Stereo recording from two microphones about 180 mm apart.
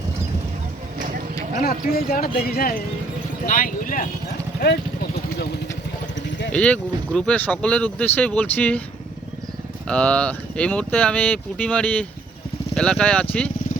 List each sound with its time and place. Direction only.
1.6 s speech: 60° left (ahead or behind)
6.5 s speech: 5° left (ahead or behind)
9.8 s speech: 5° left (ahead or behind)